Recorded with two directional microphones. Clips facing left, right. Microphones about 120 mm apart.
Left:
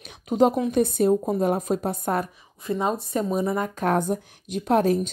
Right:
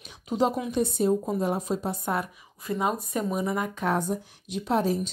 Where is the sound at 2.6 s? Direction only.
25° left (ahead or behind).